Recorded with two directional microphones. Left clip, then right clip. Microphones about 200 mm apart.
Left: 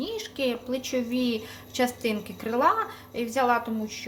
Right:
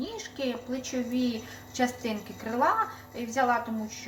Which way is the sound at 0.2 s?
50° left (ahead or behind).